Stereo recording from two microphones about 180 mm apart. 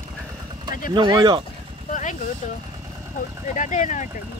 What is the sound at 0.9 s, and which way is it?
Speech, 25° right (ahead or behind).